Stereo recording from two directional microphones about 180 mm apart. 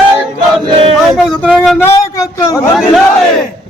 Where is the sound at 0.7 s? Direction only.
30° right (ahead or behind).